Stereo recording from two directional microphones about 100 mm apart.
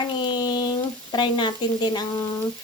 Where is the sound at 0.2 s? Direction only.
45° left (ahead or behind).